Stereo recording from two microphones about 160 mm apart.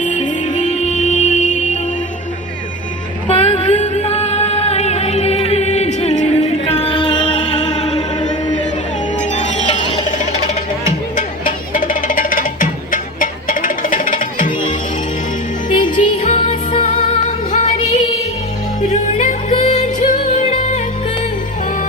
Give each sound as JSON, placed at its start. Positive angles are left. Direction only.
{"t": 0.0, "sound": "music", "side_deg": 50}
{"t": 3.2, "sound": "music", "side_deg": 40}
{"t": 11.7, "sound": "music", "side_deg": 60}
{"t": 15.8, "sound": "music", "side_deg": 50}
{"t": 16.4, "sound": "music", "side_deg": 35}